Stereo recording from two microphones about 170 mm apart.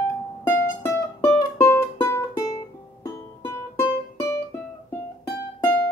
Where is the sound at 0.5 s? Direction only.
15° left (ahead or behind).